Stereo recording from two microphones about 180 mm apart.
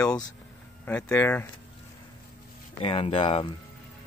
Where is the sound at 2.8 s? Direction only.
35° left (ahead or behind).